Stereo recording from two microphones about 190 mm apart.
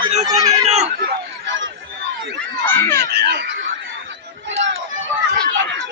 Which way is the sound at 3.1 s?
65° right (ahead or behind).